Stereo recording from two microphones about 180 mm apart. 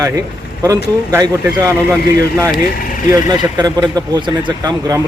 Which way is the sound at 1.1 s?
20° right (ahead or behind).